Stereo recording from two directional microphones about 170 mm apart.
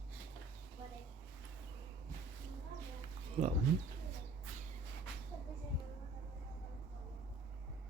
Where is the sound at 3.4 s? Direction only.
35° right (ahead or behind).